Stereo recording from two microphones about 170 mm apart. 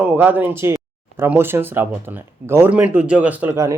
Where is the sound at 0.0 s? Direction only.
10° right (ahead or behind).